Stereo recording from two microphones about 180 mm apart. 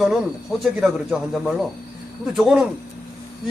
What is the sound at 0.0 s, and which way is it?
Speech, 5° right (ahead or behind).